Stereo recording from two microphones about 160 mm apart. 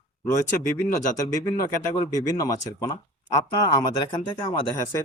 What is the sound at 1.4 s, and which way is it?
Speech, 20° left (ahead or behind).